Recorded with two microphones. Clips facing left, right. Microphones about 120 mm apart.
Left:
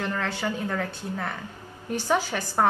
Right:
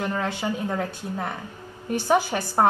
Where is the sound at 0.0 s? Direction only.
15° right (ahead or behind).